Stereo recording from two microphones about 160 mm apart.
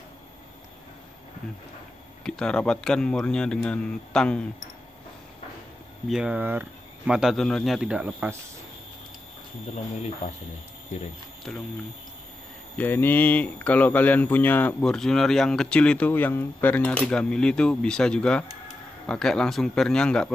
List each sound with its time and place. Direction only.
2.2 s speech: 5° left (ahead or behind)
6.0 s speech: 5° right (ahead or behind)
10.9 s speech: 45° left (ahead or behind)
11.5 s speech: centre (ahead or behind)
12.7 s speech: 10° left (ahead or behind)